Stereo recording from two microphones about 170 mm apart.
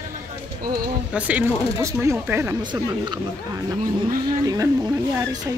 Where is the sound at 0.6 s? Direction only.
60° right (ahead or behind).